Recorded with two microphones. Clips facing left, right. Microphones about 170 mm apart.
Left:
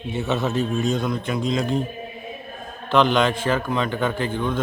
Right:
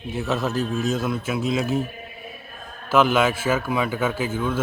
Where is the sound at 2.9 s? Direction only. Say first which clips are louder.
Even; 5° right (ahead or behind).